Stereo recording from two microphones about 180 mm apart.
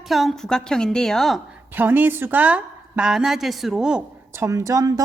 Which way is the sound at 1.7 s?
10° right (ahead or behind).